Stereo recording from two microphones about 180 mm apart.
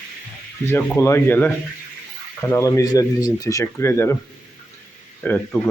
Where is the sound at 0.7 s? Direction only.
15° left (ahead or behind).